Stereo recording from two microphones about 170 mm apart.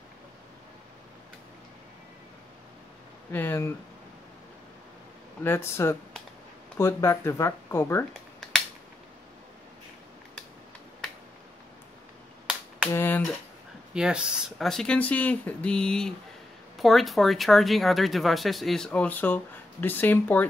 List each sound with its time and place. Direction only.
3.3 s speech: 15° left (ahead or behind)
5.4 s speech: 15° left (ahead or behind)
12.4 s finger snapping: 5° right (ahead or behind)
12.9 s a sound: 10° left (ahead or behind)
13.9 s speech: 5° right (ahead or behind); by 20.4 s 10° left (ahead or behind)